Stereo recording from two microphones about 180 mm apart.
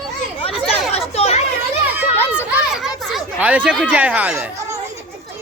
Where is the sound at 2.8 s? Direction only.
Centre (ahead or behind).